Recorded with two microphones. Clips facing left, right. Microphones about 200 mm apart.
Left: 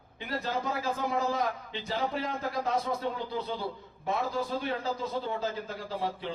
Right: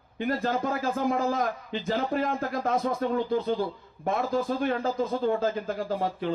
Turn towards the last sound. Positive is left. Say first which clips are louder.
# right 5 dB
turn(degrees=-50)  # may be behind; listen again after turning